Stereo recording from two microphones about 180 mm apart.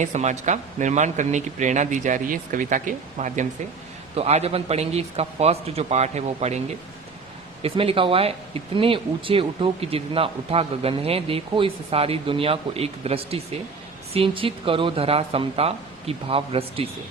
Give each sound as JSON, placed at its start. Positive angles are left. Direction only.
{"t": 0.0, "sound": "speech", "side_deg": -40}
{"t": 7.6, "sound": "speech", "side_deg": -30}